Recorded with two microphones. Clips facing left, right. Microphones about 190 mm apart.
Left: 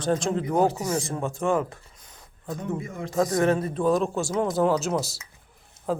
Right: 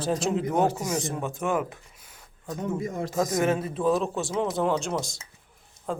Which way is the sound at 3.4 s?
5° right (ahead or behind).